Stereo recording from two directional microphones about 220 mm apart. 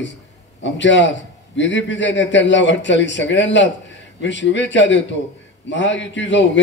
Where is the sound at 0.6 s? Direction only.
55° left (ahead or behind).